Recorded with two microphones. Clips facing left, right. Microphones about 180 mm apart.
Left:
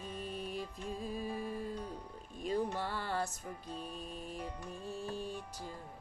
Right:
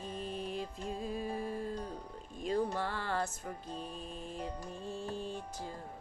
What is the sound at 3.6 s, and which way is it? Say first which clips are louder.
Music: right 1 dB; 35° right (ahead or behind).